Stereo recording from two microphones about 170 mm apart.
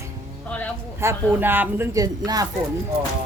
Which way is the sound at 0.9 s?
15° right (ahead or behind).